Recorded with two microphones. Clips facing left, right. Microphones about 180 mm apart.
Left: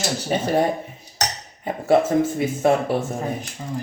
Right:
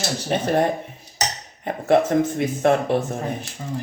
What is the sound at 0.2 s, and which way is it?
Speech, 5° left (ahead or behind).